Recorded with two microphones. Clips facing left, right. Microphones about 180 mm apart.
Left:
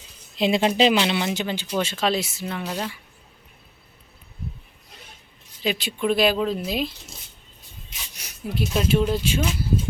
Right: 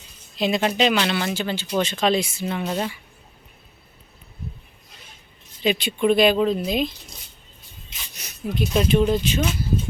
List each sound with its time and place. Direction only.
0.3 s speech: 25° left (ahead or behind)
1.8 s speech: 5° left (ahead or behind); by 2.9 s 10° right (ahead or behind)
5.6 s speech: centre (ahead or behind)
8.1 s a sound: 10° left (ahead or behind)
8.5 s speech: 5° left (ahead or behind)